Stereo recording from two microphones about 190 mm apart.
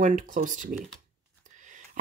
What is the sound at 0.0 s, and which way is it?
Speech, 40° right (ahead or behind).